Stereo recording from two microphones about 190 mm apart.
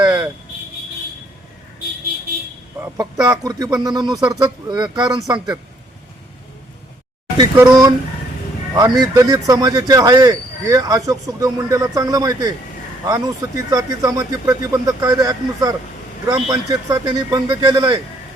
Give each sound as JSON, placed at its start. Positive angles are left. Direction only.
{"t": 2.7, "sound": "speech", "side_deg": -15}
{"t": 7.3, "sound": "speech", "side_deg": -20}